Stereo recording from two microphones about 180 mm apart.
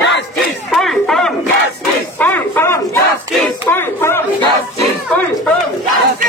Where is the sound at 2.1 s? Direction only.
10° left (ahead or behind).